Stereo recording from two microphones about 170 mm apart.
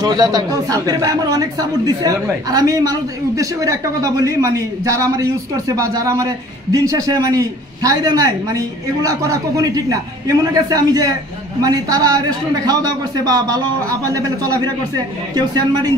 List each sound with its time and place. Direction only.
0.0 s speech: 25° right (ahead or behind)